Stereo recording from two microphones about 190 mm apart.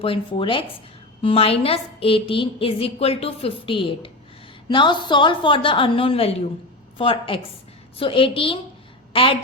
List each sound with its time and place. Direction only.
0.0 s a woman's voice: 30° left (ahead or behind)